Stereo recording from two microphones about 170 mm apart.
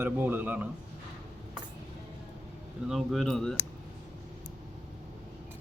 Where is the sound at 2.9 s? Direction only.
Centre (ahead or behind).